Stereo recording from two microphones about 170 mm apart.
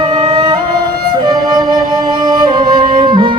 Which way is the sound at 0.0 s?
25° right (ahead or behind).